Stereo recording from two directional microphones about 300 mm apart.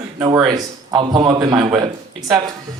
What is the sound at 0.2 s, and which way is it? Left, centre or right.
A man's voice, centre.